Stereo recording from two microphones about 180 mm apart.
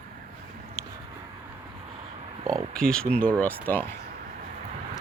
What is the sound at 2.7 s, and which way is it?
Speech, 5° left (ahead or behind).